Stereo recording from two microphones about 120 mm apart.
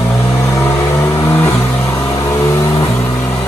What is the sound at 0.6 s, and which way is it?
Vehicle, 20° left (ahead or behind).